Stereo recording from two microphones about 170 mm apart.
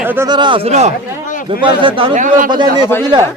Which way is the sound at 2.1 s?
50° right (ahead or behind).